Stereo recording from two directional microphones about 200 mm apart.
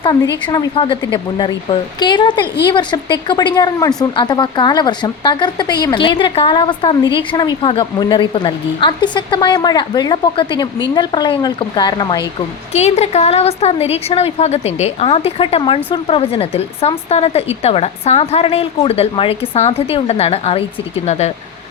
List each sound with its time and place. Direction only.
0.0 s a woman's voice: 20° left (ahead or behind)
12.7 s a woman's voice: 35° left (ahead or behind)